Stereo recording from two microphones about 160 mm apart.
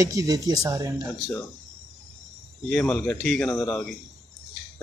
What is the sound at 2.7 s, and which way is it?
Speech, 5° left (ahead or behind).